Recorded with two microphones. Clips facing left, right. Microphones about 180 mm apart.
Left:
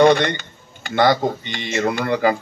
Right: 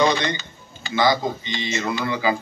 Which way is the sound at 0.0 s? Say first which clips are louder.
Left 6 dB; 60° left (ahead or behind).